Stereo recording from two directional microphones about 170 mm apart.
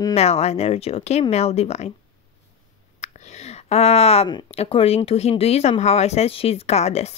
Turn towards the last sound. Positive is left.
turn(degrees=40)  # may be behind; listen again after turning